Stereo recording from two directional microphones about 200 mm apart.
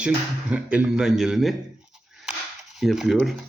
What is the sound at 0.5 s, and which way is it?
Speech, 5° right (ahead or behind).